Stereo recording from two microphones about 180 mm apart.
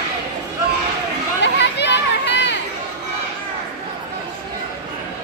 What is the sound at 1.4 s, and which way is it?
Chatter, 75° left (ahead or behind).